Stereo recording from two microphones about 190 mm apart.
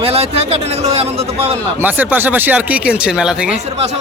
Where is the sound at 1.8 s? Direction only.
10° right (ahead or behind).